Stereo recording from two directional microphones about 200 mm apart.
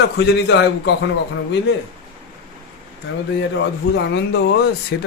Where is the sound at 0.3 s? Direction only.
60° left (ahead or behind).